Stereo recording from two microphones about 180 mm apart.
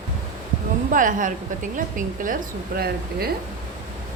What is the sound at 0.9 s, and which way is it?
A woman's voice, 45° right (ahead or behind).